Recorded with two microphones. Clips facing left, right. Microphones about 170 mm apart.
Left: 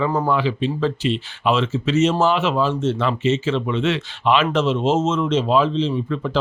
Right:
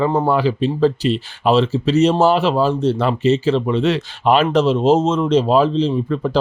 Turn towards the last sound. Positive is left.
turn(degrees=-35)  # may be behind; listen again after turning